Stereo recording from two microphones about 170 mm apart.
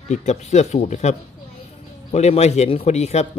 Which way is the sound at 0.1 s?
45° left (ahead or behind).